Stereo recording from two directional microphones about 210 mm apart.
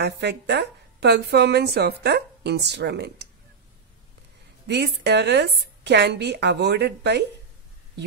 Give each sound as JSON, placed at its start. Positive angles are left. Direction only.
{"t": 0.0, "sound": "a woman's voice", "side_deg": -55}
{"t": 4.6, "sound": "a woman's voice", "side_deg": -55}